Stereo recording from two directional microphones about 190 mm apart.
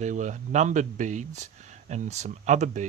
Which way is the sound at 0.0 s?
40° right (ahead or behind).